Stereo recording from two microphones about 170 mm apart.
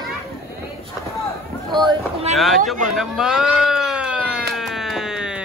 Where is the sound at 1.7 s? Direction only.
25° right (ahead or behind).